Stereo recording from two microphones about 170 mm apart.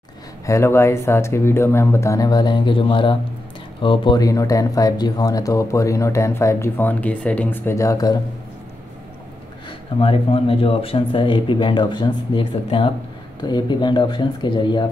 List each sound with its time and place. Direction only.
0.5 s speech: 15° left (ahead or behind)
9.7 s speech: 35° left (ahead or behind)